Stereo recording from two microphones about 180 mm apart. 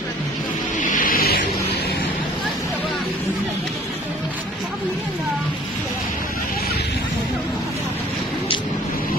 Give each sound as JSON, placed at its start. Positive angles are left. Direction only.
{"t": 0.7, "sound": "music", "side_deg": 50}